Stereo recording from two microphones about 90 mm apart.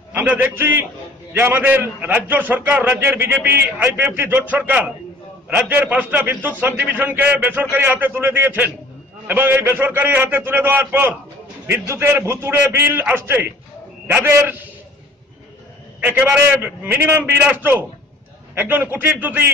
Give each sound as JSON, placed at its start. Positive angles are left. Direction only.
{"t": 0.1, "sound": "a man's voice", "side_deg": -20}
{"t": 16.0, "sound": "a man's voice", "side_deg": -20}